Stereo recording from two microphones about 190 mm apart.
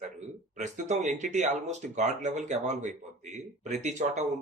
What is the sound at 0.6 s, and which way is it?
Speech, 40° right (ahead or behind).